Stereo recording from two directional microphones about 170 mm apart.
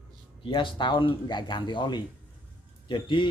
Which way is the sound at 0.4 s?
30° left (ahead or behind).